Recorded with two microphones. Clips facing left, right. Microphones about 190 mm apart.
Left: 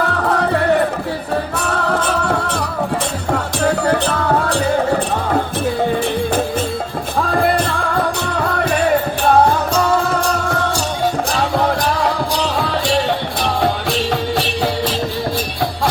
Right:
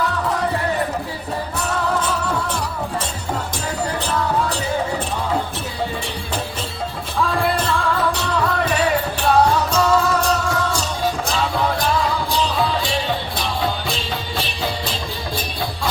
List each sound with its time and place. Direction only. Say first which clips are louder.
0.0 s music: left 4 dB; 60° left (ahead or behind)
7.2 s music: left 4 dB; 50° left (ahead or behind)
12.5 s music: left 4 dB; 70° left (ahead or behind)